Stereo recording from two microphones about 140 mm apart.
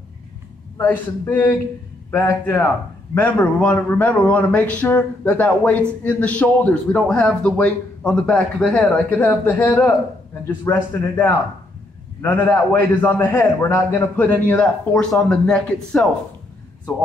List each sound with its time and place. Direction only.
0.7 s a man's voice: 15° left (ahead or behind)